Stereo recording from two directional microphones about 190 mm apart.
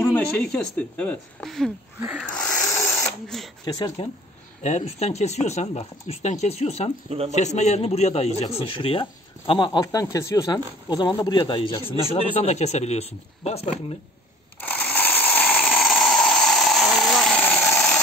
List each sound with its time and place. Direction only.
0.0 s a woman's voice: 5° left (ahead or behind)
2.0 s speech: 10° right (ahead or behind)
2.7 s sewing machine: 15° left (ahead or behind)
3.3 s a woman's voice: centre (ahead or behind)
4.6 s speech: 35° left (ahead or behind)
7.1 s speech: 30° right (ahead or behind)
7.3 s speech: 35° left (ahead or behind)
14.6 s a sound: 10° left (ahead or behind)